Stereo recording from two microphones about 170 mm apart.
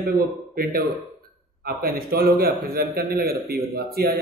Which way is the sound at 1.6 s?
65° right (ahead or behind).